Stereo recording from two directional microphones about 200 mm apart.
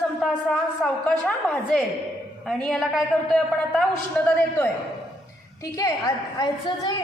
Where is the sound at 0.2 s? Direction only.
Centre (ahead or behind).